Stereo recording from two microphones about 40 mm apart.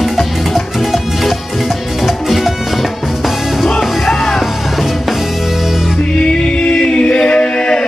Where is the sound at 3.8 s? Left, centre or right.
Centre.